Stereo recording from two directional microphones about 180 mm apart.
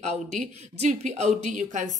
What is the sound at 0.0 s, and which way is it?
A woman's voice, 40° right (ahead or behind).